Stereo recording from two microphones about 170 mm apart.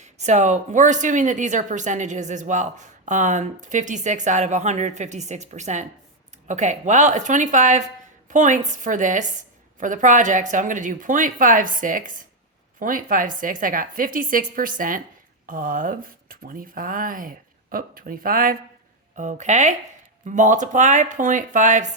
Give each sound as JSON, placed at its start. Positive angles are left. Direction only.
{"t": 0.0, "sound": "a woman's voice", "side_deg": -45}